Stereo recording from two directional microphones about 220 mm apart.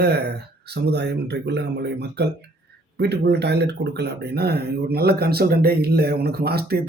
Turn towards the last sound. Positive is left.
turn(degrees=-45)  # may be behind; listen again after turning